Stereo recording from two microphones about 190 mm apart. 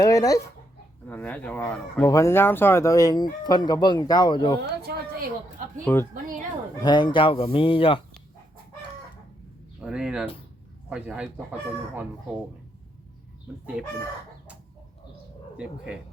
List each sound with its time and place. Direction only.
0.0 s a man's voice: 20° left (ahead or behind)
4.6 s speech: 55° right (ahead or behind)
5.8 s speech: 10° left (ahead or behind)
6.8 s a man's voice: 25° left (ahead or behind)
9.8 s a man's voice: 5° right (ahead or behind)
15.5 s speech: 5° right (ahead or behind)